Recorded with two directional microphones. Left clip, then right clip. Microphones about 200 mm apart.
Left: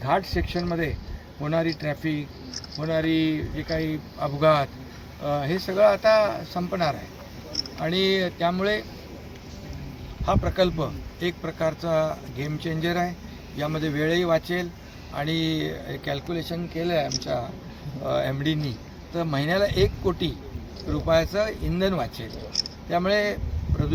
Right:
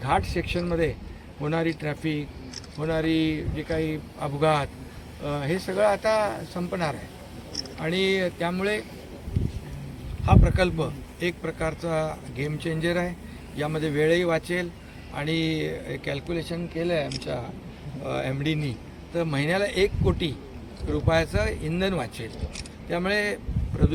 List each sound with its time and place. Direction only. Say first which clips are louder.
0.0 s a man's voice: left 1 dB; 10° right (ahead or behind)
10.2 s a man's voice: left 1 dB; 10° right (ahead or behind)